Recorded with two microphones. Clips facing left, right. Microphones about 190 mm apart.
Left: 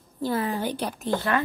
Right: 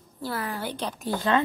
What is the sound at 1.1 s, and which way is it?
Speech, 20° right (ahead or behind).